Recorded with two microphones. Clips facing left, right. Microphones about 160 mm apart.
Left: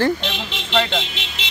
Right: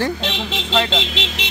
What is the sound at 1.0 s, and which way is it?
Speech, 90° right.